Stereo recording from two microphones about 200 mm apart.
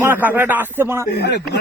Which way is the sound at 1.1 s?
55° left (ahead or behind).